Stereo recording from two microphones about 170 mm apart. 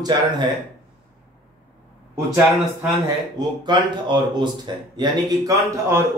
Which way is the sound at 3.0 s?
25° right (ahead or behind).